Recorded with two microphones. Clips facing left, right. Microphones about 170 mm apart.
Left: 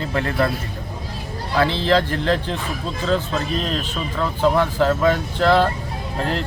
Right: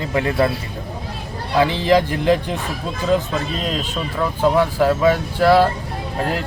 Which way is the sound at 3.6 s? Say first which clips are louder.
Right 1 dB; 10° right (ahead or behind).